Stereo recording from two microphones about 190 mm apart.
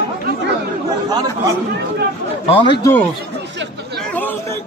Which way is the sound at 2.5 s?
25° left (ahead or behind).